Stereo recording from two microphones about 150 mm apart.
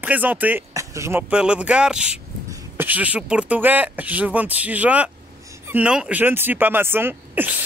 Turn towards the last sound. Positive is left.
turn(degrees=-15)  # may be behind; listen again after turning